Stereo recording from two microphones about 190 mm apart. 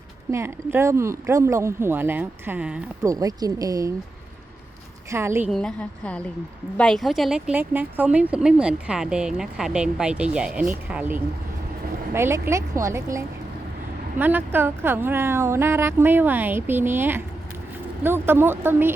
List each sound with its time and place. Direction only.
0.3 s speech: 15° right (ahead or behind)
3.0 s speech: 20° right (ahead or behind)
5.1 s speech: 15° right (ahead or behind)
5.5 s speech: 5° left (ahead or behind)